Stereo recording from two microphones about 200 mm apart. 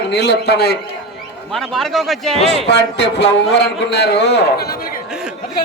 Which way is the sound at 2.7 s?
60° left (ahead or behind).